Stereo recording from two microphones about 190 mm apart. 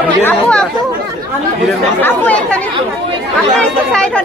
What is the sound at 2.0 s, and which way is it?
Speech, 10° left (ahead or behind).